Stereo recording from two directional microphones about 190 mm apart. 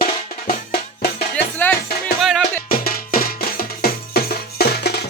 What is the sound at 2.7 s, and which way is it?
Music, 50° left (ahead or behind).